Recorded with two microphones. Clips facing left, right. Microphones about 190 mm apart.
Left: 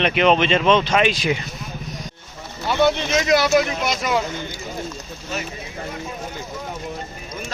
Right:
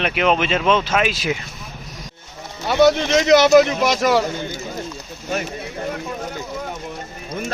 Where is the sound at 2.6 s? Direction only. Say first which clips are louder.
Right 4 dB; 55° right (ahead or behind).